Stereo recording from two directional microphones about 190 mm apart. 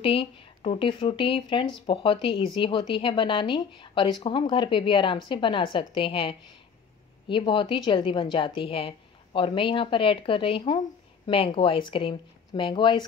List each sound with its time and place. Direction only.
0.0 s speech: 30° left (ahead or behind)